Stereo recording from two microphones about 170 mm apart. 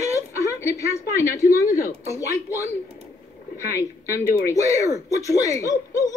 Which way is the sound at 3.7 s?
20° left (ahead or behind).